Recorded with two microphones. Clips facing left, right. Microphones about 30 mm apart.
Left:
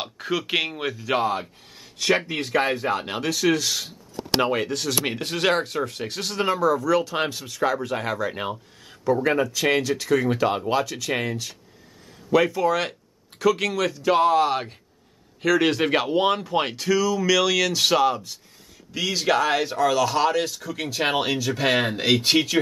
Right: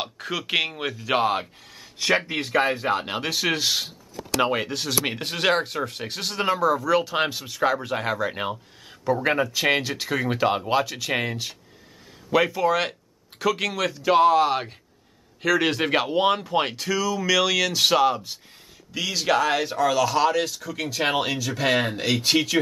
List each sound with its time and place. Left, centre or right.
0.0 s speech: centre; by 3.9 s right
4.4 s speech: centre